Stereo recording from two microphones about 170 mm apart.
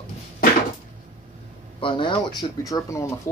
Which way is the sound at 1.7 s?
30° left (ahead or behind).